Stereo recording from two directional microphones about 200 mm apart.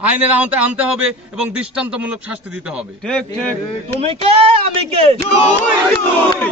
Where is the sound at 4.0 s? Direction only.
30° right (ahead or behind).